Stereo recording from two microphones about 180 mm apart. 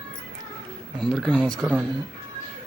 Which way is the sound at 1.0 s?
5° left (ahead or behind).